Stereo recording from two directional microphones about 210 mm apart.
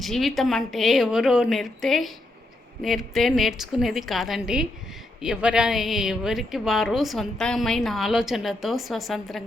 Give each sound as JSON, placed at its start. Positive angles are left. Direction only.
{"t": 0.0, "sound": "a woman's voice", "side_deg": 0}